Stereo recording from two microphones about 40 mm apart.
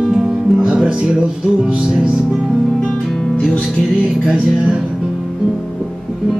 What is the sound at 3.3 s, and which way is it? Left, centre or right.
Music, left.